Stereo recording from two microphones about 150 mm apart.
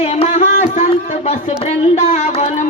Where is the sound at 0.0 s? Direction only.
45° left (ahead or behind).